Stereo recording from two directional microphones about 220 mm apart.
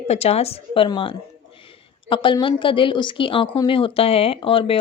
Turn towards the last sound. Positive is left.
turn(degrees=25)  # may be behind; listen again after turning